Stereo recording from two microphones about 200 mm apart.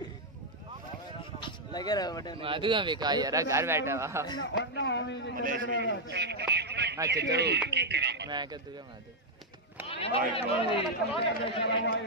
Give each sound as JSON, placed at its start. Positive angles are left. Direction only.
{"t": 1.4, "sound": "a sound", "side_deg": 20}
{"t": 2.4, "sound": "a man's voice", "side_deg": -25}
{"t": 4.4, "sound": "speech", "side_deg": 65}
{"t": 5.3, "sound": "a man's voice", "side_deg": -45}
{"t": 6.0, "sound": "a man's voice", "side_deg": -55}
{"t": 8.3, "sound": "speech", "side_deg": -20}
{"t": 9.8, "sound": "speech", "side_deg": 30}
{"t": 11.6, "sound": "speech", "side_deg": 60}